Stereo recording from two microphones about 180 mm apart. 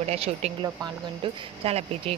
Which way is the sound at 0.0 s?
35° right (ahead or behind).